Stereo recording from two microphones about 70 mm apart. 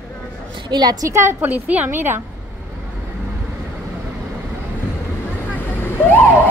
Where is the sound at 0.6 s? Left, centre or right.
Right.